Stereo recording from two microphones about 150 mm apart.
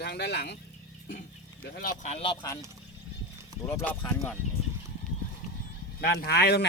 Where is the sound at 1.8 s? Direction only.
55° left (ahead or behind).